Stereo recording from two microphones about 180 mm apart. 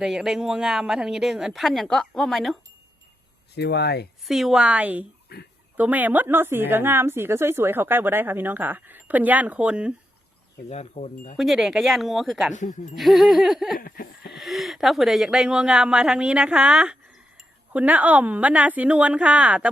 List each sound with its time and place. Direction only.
0.0 s speech: centre (ahead or behind)
3.5 s speech: 65° left (ahead or behind)
4.3 s speech: centre (ahead or behind)
5.3 s speech: 60° left (ahead or behind)
5.7 s speech: 10° right (ahead or behind)
10.7 s speech: 40° left (ahead or behind)
11.3 s speech: centre (ahead or behind)
12.5 s speech: 45° left (ahead or behind)
13.0 s speech: centre (ahead or behind)
13.7 s a sound: 55° left (ahead or behind)
14.3 s speech: centre (ahead or behind)